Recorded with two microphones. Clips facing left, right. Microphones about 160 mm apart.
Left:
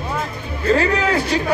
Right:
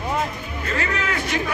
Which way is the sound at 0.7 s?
30° left (ahead or behind).